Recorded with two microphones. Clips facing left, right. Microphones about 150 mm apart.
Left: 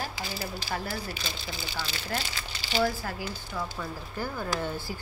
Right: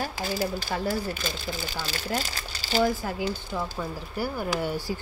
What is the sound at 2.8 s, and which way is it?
Speech, 20° right (ahead or behind).